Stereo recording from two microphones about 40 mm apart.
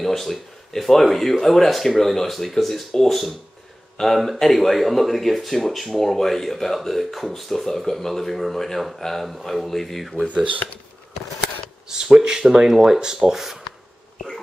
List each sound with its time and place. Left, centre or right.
0.0 s speech: centre
10.2 s speech: right
11.9 s speech: centre
14.1 s insect: centre